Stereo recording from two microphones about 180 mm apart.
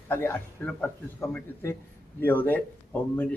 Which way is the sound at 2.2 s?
10° left (ahead or behind).